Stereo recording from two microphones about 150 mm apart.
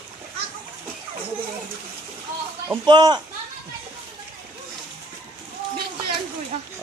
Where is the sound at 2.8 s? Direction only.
30° right (ahead or behind).